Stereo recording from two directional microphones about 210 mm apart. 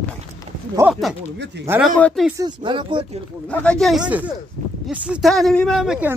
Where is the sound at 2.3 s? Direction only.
20° right (ahead or behind).